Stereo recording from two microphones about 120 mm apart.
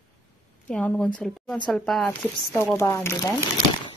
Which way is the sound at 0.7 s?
10° left (ahead or behind).